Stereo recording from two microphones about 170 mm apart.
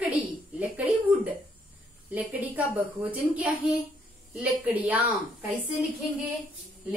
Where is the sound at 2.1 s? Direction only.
10° right (ahead or behind).